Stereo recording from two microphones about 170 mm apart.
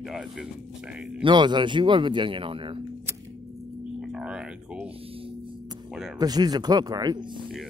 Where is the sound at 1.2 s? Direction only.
25° right (ahead or behind).